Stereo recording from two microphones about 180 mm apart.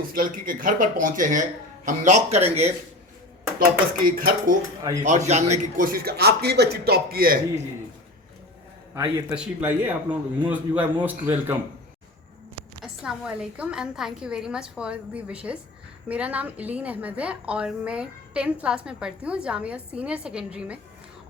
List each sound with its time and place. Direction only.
0.1 s speech: 50° right (ahead or behind)
3.6 s speech: 50° right (ahead or behind)
5.0 s speech: 40° right (ahead or behind)
9.0 s a woman's voice: 10° right (ahead or behind)
12.8 s a woman's voice: 5° right (ahead or behind)